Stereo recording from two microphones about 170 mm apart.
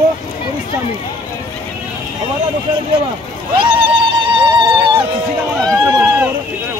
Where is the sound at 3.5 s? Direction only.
30° right (ahead or behind).